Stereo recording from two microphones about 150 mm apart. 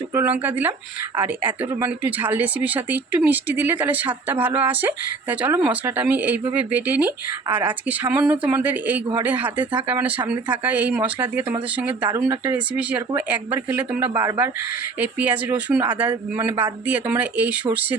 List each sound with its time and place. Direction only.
0.1 s speech: 15° right (ahead or behind)
12.7 s speech: 10° right (ahead or behind)